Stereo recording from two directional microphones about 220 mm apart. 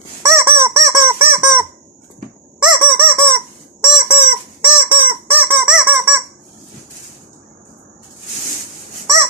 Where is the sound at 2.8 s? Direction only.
10° right (ahead or behind).